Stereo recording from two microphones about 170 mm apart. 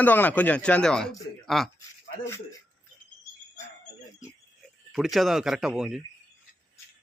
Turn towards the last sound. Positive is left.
turn(degrees=-5)  # may be behind; listen again after turning